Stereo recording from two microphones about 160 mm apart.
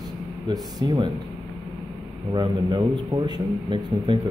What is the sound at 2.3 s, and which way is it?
Speech, 30° right (ahead or behind).